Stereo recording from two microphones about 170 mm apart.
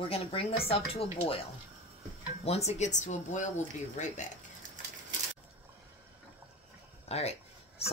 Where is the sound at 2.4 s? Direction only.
35° left (ahead or behind).